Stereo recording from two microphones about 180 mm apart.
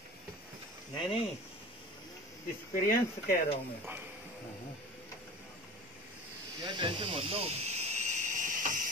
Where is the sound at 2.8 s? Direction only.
55° left (ahead or behind).